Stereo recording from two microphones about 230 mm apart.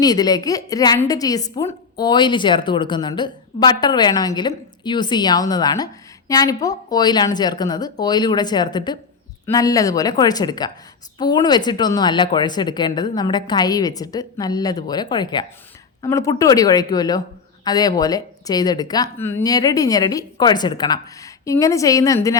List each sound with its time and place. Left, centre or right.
0.0 s a woman's voice: centre